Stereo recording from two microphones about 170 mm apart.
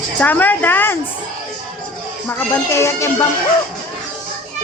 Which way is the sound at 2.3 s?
15° left (ahead or behind).